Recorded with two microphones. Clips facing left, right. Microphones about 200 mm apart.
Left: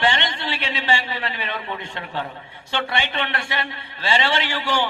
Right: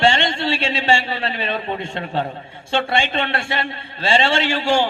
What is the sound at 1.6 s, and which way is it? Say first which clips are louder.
Speech: right 6 dB; 40° right (ahead or behind).